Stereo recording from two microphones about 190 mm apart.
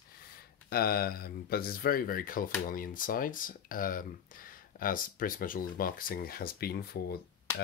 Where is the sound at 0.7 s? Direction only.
55° left (ahead or behind).